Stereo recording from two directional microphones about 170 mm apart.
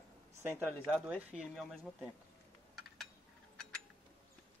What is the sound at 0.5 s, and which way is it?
Speech, 5° right (ahead or behind).